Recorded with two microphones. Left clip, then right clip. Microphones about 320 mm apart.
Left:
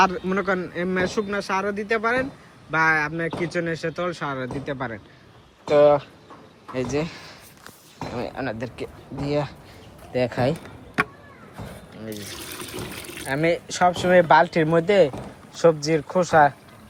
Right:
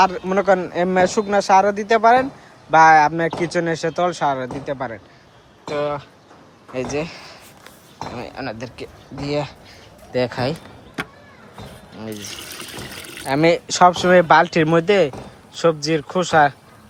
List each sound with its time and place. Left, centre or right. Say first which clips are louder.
0.0 s speech: right 4 dB; centre
3.2 s speech: right 5 dB; right
3.5 s speech: right 6 dB; centre
12.5 s speech: right 1 dB; centre